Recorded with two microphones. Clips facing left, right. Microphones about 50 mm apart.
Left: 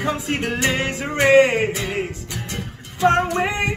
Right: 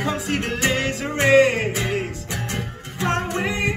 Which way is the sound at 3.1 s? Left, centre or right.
Left.